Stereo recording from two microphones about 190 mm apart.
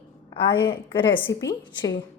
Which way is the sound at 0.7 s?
25° left (ahead or behind).